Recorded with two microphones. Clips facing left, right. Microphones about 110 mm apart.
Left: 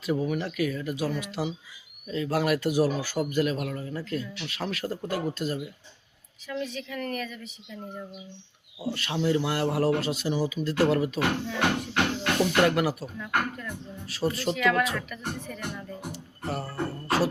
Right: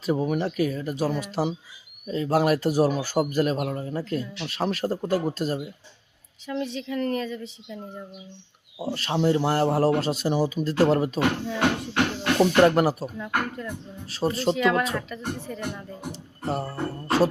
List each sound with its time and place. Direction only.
0.0 s a man's voice: 30° right (ahead or behind)
6.5 s speech: 25° right (ahead or behind)
8.8 s a man's voice: 35° right (ahead or behind)
12.4 s a man's voice: 35° right (ahead or behind)
13.1 s speech: 25° right (ahead or behind)